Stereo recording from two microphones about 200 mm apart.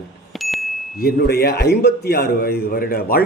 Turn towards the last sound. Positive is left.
turn(degrees=45)  # may be behind; listen again after turning